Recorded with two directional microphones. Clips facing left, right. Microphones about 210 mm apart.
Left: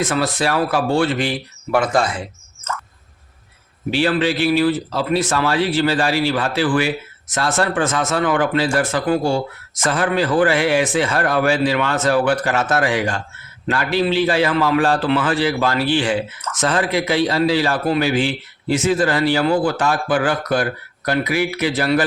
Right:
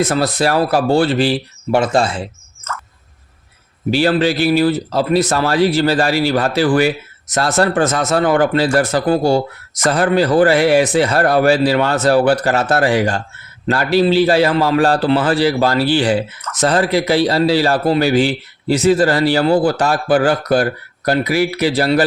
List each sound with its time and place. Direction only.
0.0 s speech: 40° right (ahead or behind)
3.9 s speech: 40° right (ahead or behind)